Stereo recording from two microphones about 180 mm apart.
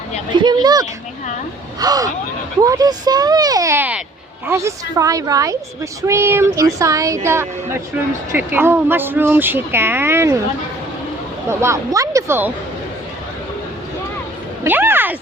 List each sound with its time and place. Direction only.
0.3 s a woman's voice: 25° right (ahead or behind)
8.5 s a woman's voice: 10° right (ahead or behind)
11.4 s a woman's voice: 15° right (ahead or behind)
14.6 s a sound: 10° right (ahead or behind)